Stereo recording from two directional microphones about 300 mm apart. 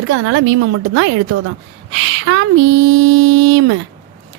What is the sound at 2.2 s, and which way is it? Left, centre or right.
Speech, right.